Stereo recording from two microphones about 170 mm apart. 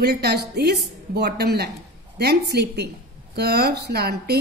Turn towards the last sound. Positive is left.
turn(degrees=-70)  # may be behind; listen again after turning